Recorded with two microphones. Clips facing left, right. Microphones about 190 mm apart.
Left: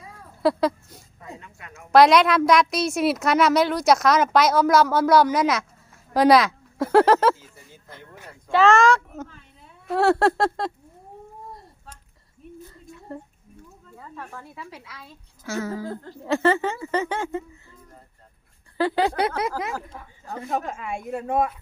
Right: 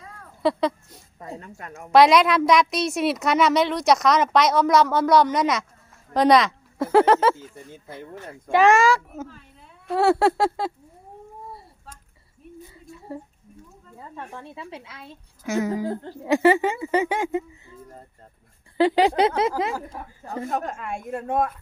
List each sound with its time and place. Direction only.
0.0 s a sound: 5° left (ahead or behind)
1.2 s speech: 35° right (ahead or behind)
1.9 s a woman's voice: centre (ahead or behind)
8.5 s a woman's voice: 10° right (ahead or behind)
12.7 s a sound: 5° right (ahead or behind)
14.3 s a woman's voice: 25° right (ahead or behind)
18.8 s speech: 20° right (ahead or behind)
20.5 s a woman's voice: centre (ahead or behind)